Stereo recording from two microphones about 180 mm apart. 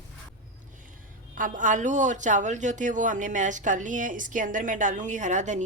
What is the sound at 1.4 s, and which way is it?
A man's voice, 45° right (ahead or behind).